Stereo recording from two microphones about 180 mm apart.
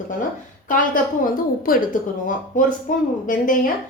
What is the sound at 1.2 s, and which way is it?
A woman's voice, 50° left (ahead or behind).